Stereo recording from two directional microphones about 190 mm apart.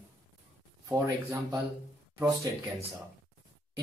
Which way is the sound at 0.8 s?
15° right (ahead or behind).